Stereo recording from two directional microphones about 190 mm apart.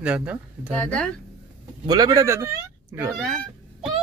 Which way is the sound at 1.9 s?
20° right (ahead or behind).